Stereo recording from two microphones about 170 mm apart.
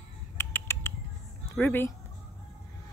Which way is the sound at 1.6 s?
10° left (ahead or behind).